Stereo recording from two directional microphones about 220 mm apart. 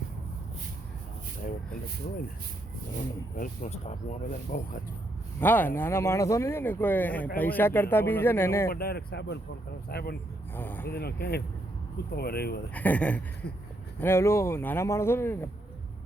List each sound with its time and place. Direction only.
3.3 s speech: 35° left (ahead or behind)
5.4 s speech: 10° left (ahead or behind)
8.7 s speech: 45° left (ahead or behind)
10.5 s speech: 10° left (ahead or behind)
10.8 s speech: 45° left (ahead or behind)
12.7 s speech: 5° left (ahead or behind)